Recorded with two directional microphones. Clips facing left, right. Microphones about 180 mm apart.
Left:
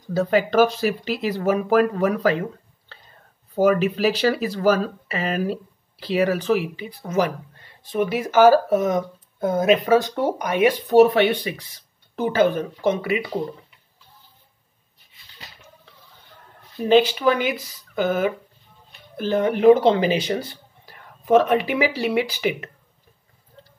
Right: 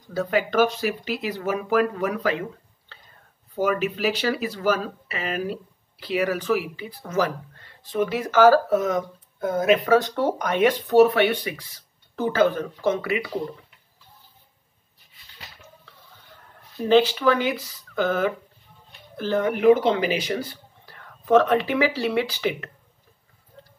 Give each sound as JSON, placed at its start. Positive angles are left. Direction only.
{"t": 0.1, "sound": "speech", "side_deg": 30}
{"t": 3.5, "sound": "speech", "side_deg": 35}
{"t": 9.9, "sound": "speech", "side_deg": 10}
{"t": 16.8, "sound": "speech", "side_deg": 15}
{"t": 19.4, "sound": "speech", "side_deg": 30}
{"t": 20.8, "sound": "speech", "side_deg": 15}